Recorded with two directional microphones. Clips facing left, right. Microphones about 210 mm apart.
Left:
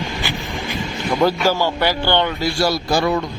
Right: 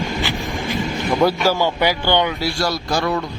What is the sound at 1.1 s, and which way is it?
Speech, 5° right (ahead or behind).